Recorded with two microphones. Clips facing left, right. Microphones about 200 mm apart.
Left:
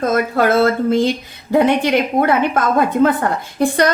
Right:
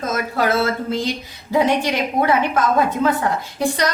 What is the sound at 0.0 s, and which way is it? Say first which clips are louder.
A woman's voice: left 5 dB; 55° left (ahead or behind).